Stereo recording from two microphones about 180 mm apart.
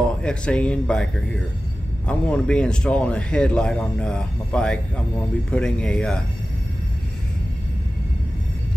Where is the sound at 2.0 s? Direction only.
5° left (ahead or behind).